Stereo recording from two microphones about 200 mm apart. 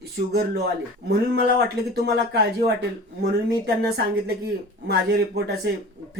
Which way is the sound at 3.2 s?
55° right (ahead or behind).